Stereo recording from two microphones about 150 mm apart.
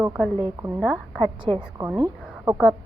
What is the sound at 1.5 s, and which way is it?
Speech, 40° right (ahead or behind).